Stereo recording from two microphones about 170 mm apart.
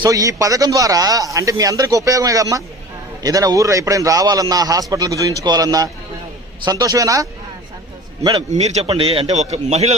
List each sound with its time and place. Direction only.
0.0 s speech: 20° right (ahead or behind)
8.5 s a man's voice: 40° right (ahead or behind)